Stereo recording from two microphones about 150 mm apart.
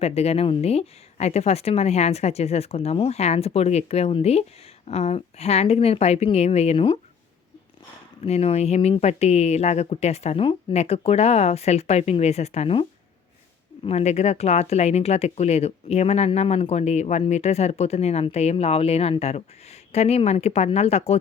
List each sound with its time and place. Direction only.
0.0 s speech: 45° left (ahead or behind)
8.2 s speech: 45° left (ahead or behind)
13.8 s speech: 45° left (ahead or behind)